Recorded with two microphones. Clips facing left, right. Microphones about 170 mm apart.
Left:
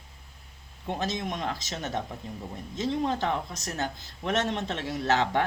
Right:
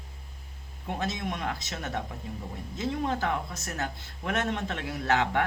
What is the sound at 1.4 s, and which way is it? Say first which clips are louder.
Speech: left 1 dB; 30° left (ahead or behind).